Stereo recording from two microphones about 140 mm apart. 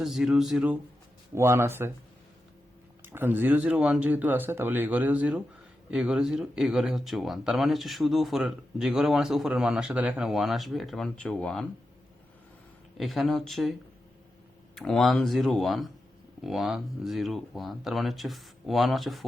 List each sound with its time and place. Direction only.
0.0 s speech: 5° right (ahead or behind)
1.4 s speech: 20° right (ahead or behind)
3.0 s speech: 15° right (ahead or behind); by 11.6 s 5° left (ahead or behind)
13.0 s speech: centre (ahead or behind)
14.8 s speech: centre (ahead or behind)